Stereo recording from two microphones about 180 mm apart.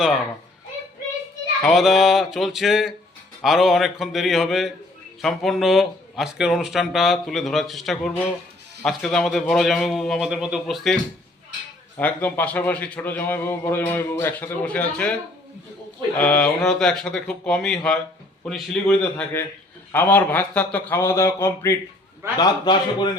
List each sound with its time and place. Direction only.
1.6 s speech: centre (ahead or behind)
11.9 s a man's voice: 10° left (ahead or behind)
16.1 s a man's voice: 5° left (ahead or behind); by 23.1 s 25° left (ahead or behind)